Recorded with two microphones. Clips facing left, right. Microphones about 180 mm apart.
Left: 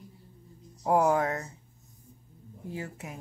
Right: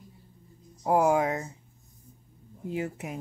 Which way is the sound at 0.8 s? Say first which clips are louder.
Right 1 dB; 5° right (ahead or behind).